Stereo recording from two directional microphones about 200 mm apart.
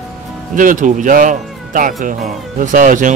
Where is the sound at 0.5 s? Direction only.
40° right (ahead or behind).